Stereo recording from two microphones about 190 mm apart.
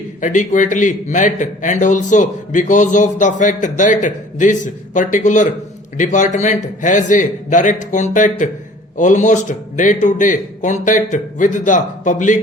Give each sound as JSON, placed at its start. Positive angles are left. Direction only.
{"t": 0.2, "sound": "a man's voice", "side_deg": 40}